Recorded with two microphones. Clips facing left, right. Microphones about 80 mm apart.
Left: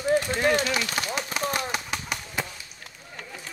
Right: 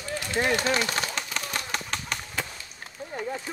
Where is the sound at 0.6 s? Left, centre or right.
Right.